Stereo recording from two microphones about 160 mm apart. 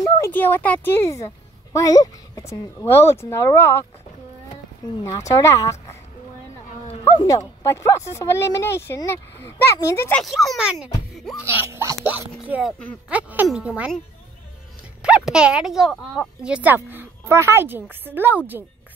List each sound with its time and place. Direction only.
0.0 s a woman's voice: 15° left (ahead or behind)
5.0 s speech: 20° left (ahead or behind)
7.2 s speech: 20° left (ahead or behind)
10.2 s a woman's voice: centre (ahead or behind)
15.0 s a woman's voice: 5° right (ahead or behind)